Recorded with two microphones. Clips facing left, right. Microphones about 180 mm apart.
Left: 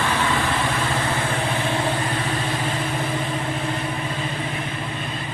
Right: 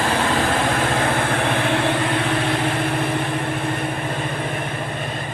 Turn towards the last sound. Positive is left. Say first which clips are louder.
# right 2 dB
turn(degrees=-55)  # may be behind; listen again after turning